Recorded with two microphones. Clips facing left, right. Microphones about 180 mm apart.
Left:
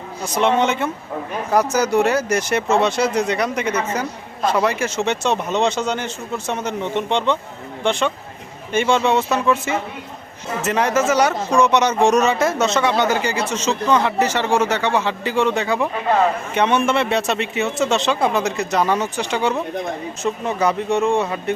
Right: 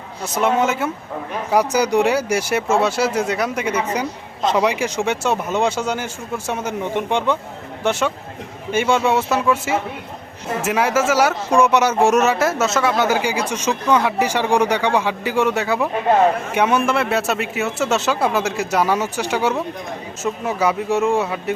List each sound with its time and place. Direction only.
0.3 s a man's voice: 5° right (ahead or behind)